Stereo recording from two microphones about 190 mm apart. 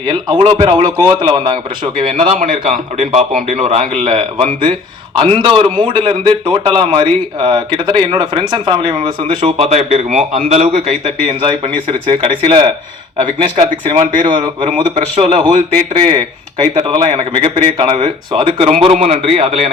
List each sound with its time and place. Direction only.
0.0 s a man's voice: 25° right (ahead or behind)